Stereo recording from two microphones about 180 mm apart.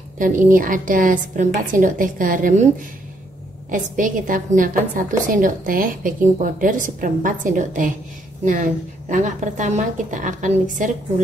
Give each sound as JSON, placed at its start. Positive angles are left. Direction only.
{"t": 0.2, "sound": "a woman's voice", "side_deg": -50}
{"t": 3.7, "sound": "a woman's voice", "side_deg": -45}